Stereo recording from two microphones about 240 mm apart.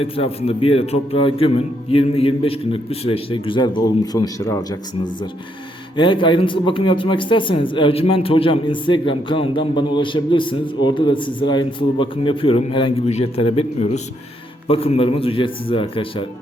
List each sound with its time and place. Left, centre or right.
0.0 s a man's voice: left
6.0 s a man's voice: centre